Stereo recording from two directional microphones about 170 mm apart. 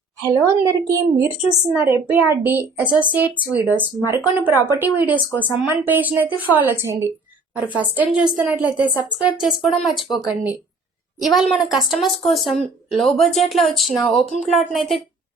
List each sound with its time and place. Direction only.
0.2 s a woman's voice: 15° right (ahead or behind); by 10.2 s centre (ahead or behind)
11.2 s a woman's voice: centre (ahead or behind)